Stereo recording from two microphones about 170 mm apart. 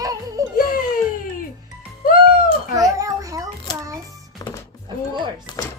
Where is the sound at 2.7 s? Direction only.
20° right (ahead or behind).